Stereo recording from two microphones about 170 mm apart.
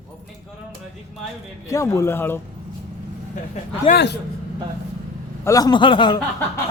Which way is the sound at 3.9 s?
75° left (ahead or behind).